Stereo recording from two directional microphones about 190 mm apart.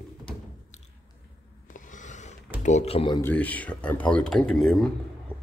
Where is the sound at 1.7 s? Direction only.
40° left (ahead or behind).